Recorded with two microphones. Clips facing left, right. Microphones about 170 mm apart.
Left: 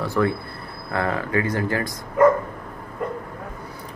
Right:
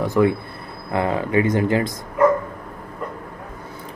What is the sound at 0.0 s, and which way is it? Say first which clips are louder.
A man's voice: right 4 dB; 15° right (ahead or behind).